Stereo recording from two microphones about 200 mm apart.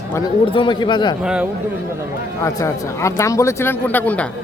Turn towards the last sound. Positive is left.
turn(degrees=10)  # may be behind; listen again after turning